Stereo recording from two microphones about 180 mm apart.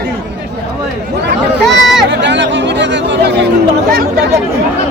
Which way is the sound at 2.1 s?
80° right.